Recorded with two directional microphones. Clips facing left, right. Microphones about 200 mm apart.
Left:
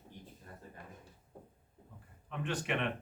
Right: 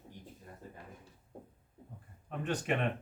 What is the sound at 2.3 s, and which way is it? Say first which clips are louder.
Speech: right 2 dB; 40° right (ahead or behind).